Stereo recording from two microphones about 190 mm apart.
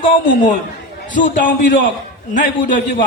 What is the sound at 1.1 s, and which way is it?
Speech, 45° left (ahead or behind).